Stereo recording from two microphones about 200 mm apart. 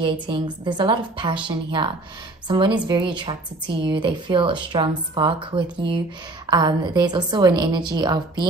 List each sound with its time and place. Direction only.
0.0 s a woman's voice: 25° right (ahead or behind)